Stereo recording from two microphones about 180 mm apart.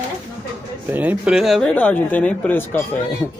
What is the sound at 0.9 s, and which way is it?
Speech, 5° right (ahead or behind).